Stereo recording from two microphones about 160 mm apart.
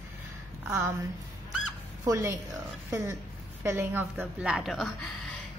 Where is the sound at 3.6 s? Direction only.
15° right (ahead or behind).